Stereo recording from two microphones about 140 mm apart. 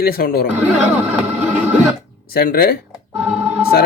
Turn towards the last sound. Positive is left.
turn(degrees=-10)  # may be behind; listen again after turning